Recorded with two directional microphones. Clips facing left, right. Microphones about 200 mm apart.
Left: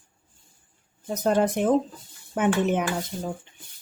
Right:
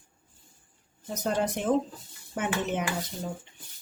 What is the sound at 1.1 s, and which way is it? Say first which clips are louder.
Speech: left 6 dB; 55° left (ahead or behind).